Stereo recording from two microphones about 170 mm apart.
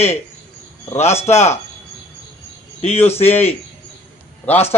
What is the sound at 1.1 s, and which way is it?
Speech, 15° left (ahead or behind).